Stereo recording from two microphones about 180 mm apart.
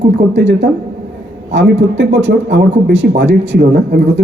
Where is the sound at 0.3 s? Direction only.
80° right.